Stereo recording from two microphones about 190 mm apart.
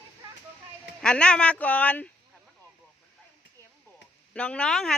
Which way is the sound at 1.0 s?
5° left (ahead or behind).